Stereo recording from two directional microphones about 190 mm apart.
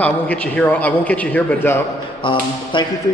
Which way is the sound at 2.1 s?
25° left (ahead or behind).